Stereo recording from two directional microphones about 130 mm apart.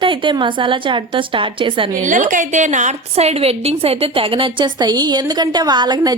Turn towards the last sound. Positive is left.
turn(degrees=-35)  # may be behind; listen again after turning